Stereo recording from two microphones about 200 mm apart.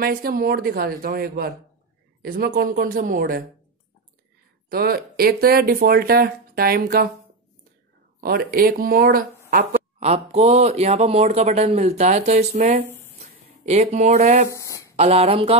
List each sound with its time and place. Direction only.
0.0 s speech: 45° right (ahead or behind)
4.6 s speech: 50° right (ahead or behind)
8.2 s speech: 50° right (ahead or behind)
9.9 s speech: 30° right (ahead or behind)
14.5 s a sound: 15° left (ahead or behind)
15.0 s speech: 30° right (ahead or behind)